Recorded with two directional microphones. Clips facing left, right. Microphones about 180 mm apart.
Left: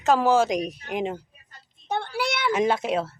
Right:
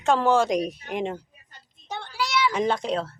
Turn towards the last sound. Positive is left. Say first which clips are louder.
# left 1 dB
turn(degrees=5)  # may be behind; listen again after turning